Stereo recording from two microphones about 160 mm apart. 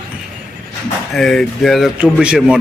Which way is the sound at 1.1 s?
Centre (ahead or behind).